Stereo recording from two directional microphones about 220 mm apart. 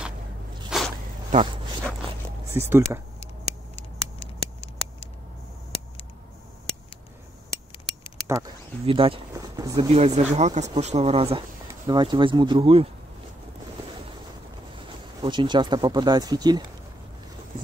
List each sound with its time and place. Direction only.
0.7 s a sound: centre (ahead or behind)
2.5 s speech: 10° right (ahead or behind)
4.2 s patter: 25° left (ahead or behind)
8.8 s speech: 25° right (ahead or behind)
9.3 s a sound: 15° right (ahead or behind)
9.8 s speech: 30° right (ahead or behind)
15.2 s speech: 20° right (ahead or behind)